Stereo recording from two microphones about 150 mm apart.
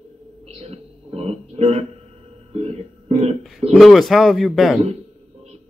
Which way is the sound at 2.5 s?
45° right (ahead or behind).